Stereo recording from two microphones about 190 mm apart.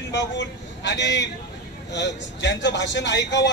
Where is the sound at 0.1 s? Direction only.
70° left (ahead or behind).